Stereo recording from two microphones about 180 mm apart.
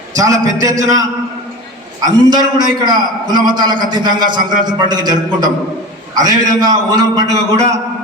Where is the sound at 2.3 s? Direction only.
25° right (ahead or behind).